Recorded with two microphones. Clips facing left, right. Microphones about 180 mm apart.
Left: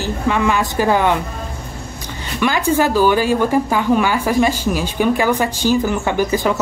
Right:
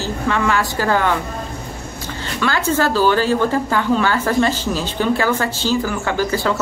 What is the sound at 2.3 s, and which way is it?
Speech, 15° left (ahead or behind).